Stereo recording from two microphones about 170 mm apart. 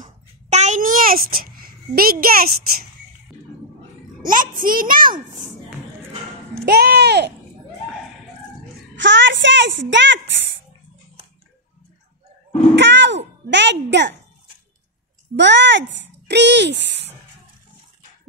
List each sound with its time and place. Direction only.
0.0 s babbling: 45° right (ahead or behind); by 2.5 s 60° right (ahead or behind)
4.2 s a child's voice: 55° right (ahead or behind)
6.6 s speech: 75° right (ahead or behind)
8.9 s a woman's voice: 90° right
12.7 s speech: 90° right
15.3 s speech: 90° right